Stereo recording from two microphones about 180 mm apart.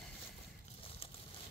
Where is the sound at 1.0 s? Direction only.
30° left (ahead or behind).